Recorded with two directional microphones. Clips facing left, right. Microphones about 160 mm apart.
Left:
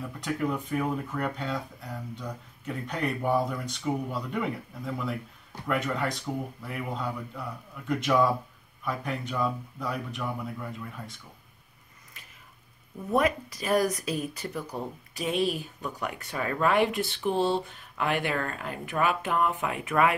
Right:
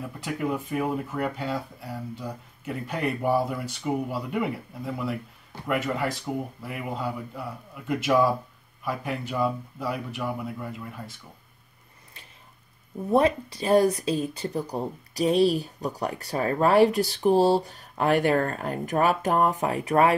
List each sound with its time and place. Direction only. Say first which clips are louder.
0.0 s speech: even; 5° right (ahead or behind)
13.1 s speech: right 4 dB; 30° right (ahead or behind)